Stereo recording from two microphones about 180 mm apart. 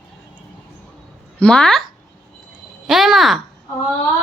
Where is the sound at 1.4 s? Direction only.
5° left (ahead or behind).